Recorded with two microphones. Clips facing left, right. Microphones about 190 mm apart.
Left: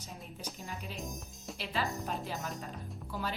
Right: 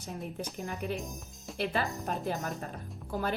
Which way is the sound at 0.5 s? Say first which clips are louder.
Right 8 dB; 60° right (ahead or behind).